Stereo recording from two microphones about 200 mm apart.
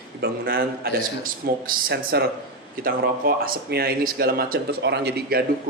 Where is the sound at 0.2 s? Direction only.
50° right (ahead or behind).